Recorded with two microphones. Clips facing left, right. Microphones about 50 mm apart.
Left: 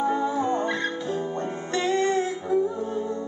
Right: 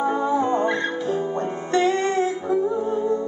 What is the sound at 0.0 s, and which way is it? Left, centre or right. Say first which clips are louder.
Music: right 3 dB; centre.